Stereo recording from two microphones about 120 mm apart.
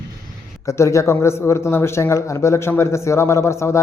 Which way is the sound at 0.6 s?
25° left (ahead or behind).